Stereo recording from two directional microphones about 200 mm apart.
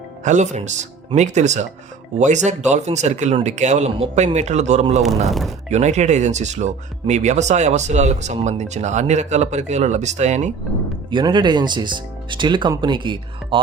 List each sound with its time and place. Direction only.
0.3 s speech: 35° right (ahead or behind)
11.1 s speech: 20° right (ahead or behind)